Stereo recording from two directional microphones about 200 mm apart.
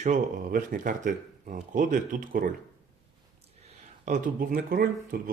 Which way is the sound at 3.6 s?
35° right (ahead or behind).